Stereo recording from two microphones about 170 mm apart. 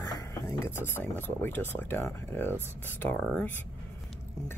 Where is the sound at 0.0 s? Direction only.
20° left (ahead or behind).